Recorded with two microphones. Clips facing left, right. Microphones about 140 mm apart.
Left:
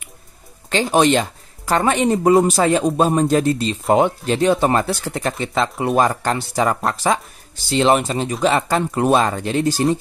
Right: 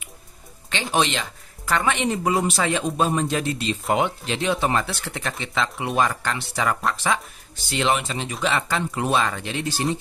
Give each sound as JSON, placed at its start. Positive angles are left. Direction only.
{"t": 0.9, "sound": "speech", "side_deg": 45}